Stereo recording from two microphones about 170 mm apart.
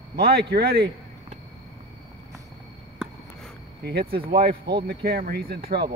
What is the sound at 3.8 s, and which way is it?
Speech, 75° right (ahead or behind).